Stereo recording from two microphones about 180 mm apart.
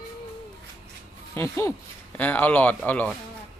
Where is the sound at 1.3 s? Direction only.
15° left (ahead or behind).